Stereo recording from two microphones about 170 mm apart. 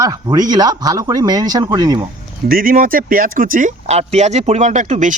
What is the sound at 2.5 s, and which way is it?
Speech, 55° right (ahead or behind).